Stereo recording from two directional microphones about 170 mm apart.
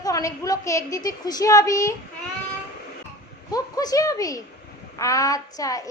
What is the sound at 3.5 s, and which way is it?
A woman's voice, 20° left (ahead or behind).